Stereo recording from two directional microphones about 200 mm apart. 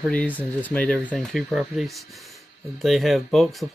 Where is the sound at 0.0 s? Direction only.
5° left (ahead or behind).